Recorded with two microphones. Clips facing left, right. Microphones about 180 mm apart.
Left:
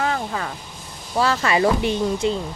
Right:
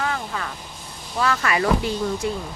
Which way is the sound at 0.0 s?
30° left (ahead or behind).